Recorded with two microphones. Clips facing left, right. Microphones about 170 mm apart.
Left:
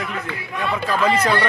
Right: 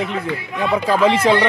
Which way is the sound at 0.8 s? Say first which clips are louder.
Right 4 dB; 25° right (ahead or behind).